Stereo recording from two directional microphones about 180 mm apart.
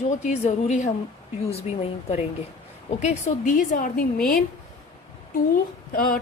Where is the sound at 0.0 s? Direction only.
40° left (ahead or behind).